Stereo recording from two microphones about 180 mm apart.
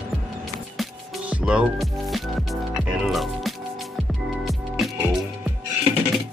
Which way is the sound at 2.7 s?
Centre (ahead or behind).